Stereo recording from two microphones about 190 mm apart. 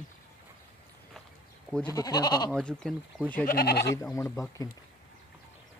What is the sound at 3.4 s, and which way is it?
Speech, 55° left (ahead or behind).